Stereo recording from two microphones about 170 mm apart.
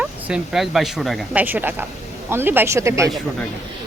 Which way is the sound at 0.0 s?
5° right (ahead or behind).